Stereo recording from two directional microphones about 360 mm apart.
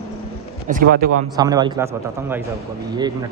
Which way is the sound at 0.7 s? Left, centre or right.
Right.